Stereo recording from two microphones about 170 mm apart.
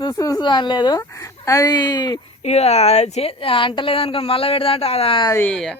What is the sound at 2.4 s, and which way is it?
A woman's voice, 40° left (ahead or behind).